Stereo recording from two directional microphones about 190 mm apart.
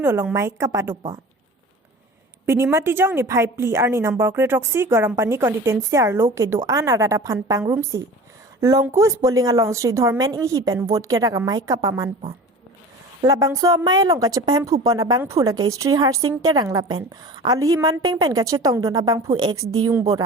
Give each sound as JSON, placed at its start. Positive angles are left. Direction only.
{"t": 0.0, "sound": "a woman's voice", "side_deg": -10}
{"t": 2.5, "sound": "a woman's voice", "side_deg": -15}
{"t": 13.2, "sound": "a woman's voice", "side_deg": -20}